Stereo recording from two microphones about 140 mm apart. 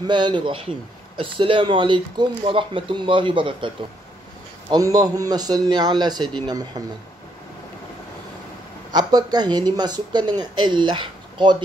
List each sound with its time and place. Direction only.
0.0 s a man's voice: 35° right (ahead or behind)
8.9 s speech: 30° right (ahead or behind)